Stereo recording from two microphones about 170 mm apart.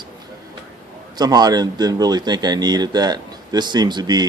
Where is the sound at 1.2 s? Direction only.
25° right (ahead or behind).